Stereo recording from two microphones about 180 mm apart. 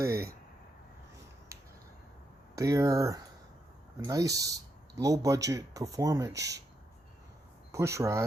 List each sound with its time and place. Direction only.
2.6 s speech: 20° right (ahead or behind)
7.7 s speech: 15° right (ahead or behind)